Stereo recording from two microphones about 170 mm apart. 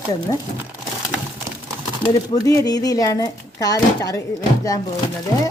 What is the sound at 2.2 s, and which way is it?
Speech, 20° left (ahead or behind).